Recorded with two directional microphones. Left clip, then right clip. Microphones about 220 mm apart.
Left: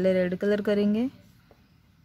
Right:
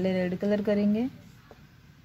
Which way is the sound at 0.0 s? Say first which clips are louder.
Left 5 dB; 35° left (ahead or behind).